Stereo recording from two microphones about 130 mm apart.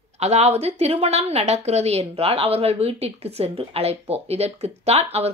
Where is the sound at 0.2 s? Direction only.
55° right (ahead or behind).